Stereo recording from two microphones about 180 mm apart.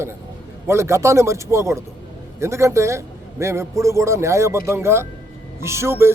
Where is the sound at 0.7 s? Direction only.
15° right (ahead or behind).